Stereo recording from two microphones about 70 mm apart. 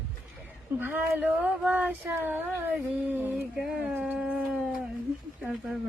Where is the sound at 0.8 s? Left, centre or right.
Right.